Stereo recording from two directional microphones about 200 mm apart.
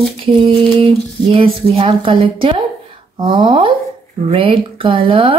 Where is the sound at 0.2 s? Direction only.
25° right (ahead or behind).